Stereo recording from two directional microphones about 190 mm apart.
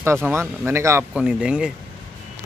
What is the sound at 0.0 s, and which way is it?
Speech, 15° right (ahead or behind).